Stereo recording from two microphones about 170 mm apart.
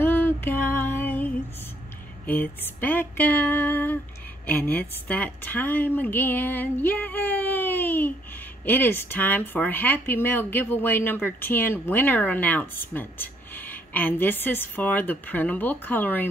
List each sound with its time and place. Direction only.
0.0 s music: 10° left (ahead or behind)
2.2 s speech: 10° left (ahead or behind)